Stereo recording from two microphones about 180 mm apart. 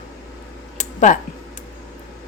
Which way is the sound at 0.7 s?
45° left (ahead or behind).